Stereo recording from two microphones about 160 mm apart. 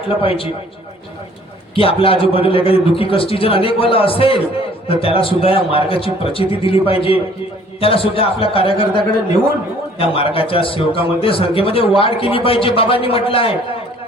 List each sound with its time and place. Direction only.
0.2 s a man's voice: 35° left (ahead or behind)
1.7 s a man's voice: 35° left (ahead or behind)
10.0 s a man's voice: 35° left (ahead or behind)